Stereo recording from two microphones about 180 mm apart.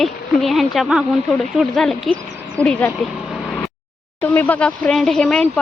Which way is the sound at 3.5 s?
5° left (ahead or behind).